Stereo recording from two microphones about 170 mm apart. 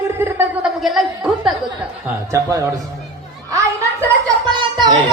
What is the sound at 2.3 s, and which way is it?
Speech, 20° right (ahead or behind).